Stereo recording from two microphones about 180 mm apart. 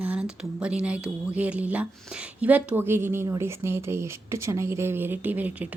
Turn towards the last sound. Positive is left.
turn(degrees=-10)  # may be behind; listen again after turning